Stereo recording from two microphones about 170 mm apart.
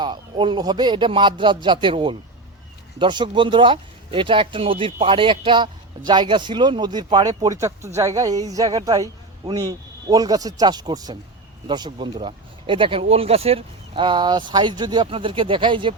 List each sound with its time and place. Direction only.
0.0 s speech: 30° right (ahead or behind)